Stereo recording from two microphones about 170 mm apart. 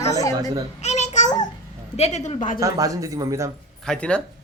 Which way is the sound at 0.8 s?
45° left (ahead or behind).